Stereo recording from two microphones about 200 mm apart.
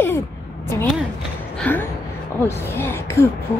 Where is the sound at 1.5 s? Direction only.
10° left (ahead or behind).